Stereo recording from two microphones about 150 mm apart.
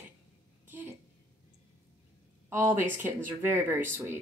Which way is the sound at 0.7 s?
10° right (ahead or behind).